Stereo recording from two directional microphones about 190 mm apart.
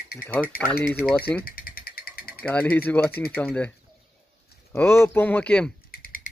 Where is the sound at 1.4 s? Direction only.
50° left (ahead or behind).